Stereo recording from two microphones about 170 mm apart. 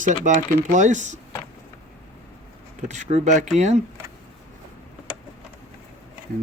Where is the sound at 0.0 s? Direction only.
45° right (ahead or behind).